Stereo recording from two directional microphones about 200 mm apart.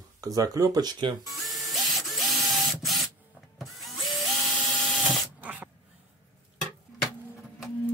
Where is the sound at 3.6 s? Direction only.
Centre (ahead or behind).